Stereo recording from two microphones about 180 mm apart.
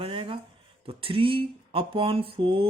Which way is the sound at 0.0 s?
30° right (ahead or behind).